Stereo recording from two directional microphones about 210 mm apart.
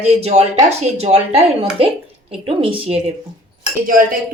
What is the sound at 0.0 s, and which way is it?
A woman's voice, 30° right (ahead or behind).